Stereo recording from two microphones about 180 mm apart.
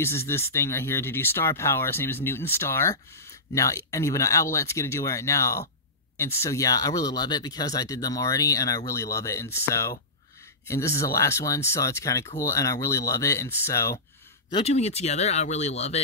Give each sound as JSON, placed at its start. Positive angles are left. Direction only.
{"t": 0.0, "sound": "speech", "side_deg": 15}
{"t": 14.5, "sound": "speech", "side_deg": 35}